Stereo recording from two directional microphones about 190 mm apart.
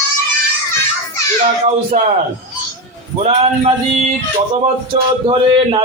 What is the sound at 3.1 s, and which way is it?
Speech, 30° right (ahead or behind).